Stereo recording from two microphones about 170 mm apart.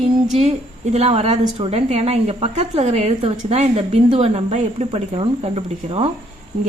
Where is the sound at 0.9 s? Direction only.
35° right (ahead or behind).